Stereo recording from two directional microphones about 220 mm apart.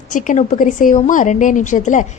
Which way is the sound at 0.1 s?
35° left (ahead or behind).